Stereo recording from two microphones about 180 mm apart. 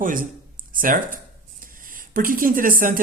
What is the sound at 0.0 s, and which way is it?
Speech, 50° right (ahead or behind).